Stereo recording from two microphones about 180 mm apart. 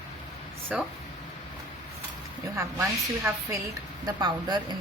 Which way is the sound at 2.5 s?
15° right (ahead or behind).